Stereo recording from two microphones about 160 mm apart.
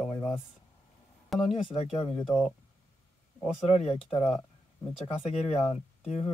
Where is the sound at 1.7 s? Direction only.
35° left (ahead or behind).